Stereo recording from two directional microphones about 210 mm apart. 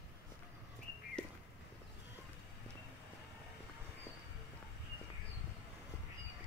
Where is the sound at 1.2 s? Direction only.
5° left (ahead or behind).